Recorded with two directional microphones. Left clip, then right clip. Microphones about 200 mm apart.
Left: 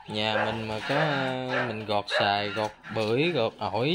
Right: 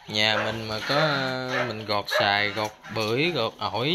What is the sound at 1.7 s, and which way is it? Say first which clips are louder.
Speech: right 2 dB; 15° left (ahead or behind).